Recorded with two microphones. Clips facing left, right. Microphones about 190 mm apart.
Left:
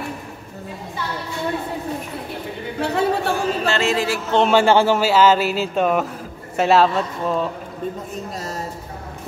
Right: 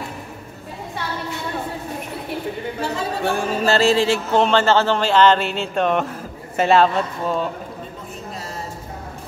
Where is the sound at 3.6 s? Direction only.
35° right (ahead or behind).